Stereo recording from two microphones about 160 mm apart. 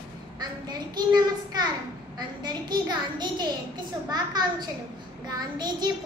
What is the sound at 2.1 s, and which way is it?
A child's voice, 25° right (ahead or behind).